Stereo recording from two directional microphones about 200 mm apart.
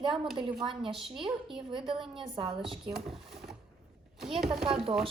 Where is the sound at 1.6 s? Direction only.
25° right (ahead or behind).